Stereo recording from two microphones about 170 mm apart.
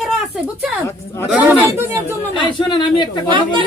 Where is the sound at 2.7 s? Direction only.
30° left (ahead or behind).